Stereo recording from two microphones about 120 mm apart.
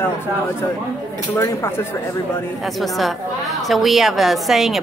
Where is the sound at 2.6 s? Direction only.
Centre (ahead or behind).